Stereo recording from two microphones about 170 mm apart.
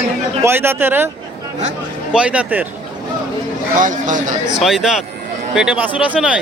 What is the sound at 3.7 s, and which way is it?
Speech, 50° right (ahead or behind).